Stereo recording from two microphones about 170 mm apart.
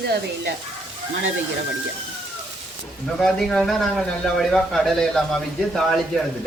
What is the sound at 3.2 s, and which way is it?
Speech, 5° left (ahead or behind).